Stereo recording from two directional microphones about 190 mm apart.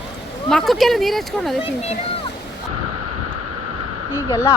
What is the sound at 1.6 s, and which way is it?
Speech, 35° left (ahead or behind).